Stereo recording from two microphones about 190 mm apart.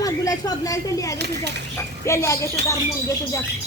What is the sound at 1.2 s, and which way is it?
Speech, 65° right (ahead or behind).